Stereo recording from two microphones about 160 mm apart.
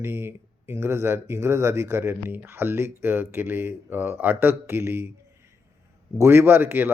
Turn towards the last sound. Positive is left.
turn(degrees=-10)  # may be behind; listen again after turning